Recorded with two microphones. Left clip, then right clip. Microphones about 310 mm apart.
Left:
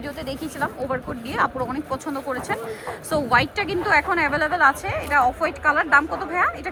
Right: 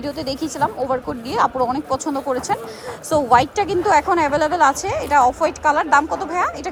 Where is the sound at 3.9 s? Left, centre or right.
Centre.